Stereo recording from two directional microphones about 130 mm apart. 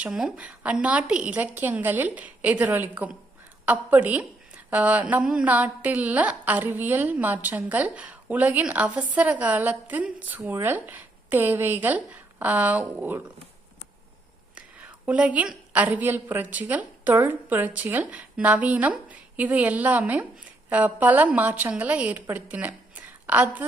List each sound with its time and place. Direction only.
0.0 s a woman's voice: 5° right (ahead or behind)
15.0 s a woman's voice: 10° right (ahead or behind)